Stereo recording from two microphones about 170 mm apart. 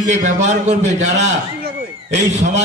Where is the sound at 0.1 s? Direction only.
45° right (ahead or behind).